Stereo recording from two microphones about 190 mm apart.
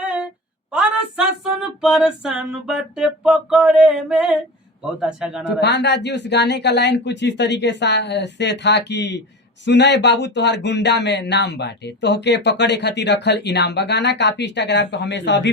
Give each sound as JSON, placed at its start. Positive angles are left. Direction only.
{"t": 0.0, "sound": "a sound", "side_deg": -10}
{"t": 0.7, "sound": "female singing", "side_deg": -5}
{"t": 5.5, "sound": "speech", "side_deg": 65}